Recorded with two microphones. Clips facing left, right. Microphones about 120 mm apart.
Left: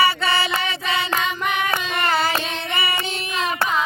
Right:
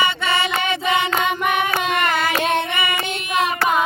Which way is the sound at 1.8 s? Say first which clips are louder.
Right 4 dB; 55° right (ahead or behind).